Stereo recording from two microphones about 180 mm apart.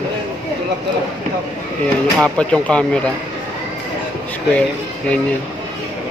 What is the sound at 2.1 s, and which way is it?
Speech, 5° left (ahead or behind).